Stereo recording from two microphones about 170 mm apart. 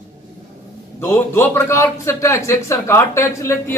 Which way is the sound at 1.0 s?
15° left (ahead or behind).